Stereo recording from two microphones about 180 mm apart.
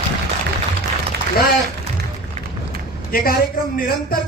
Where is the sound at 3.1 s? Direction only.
55° left (ahead or behind).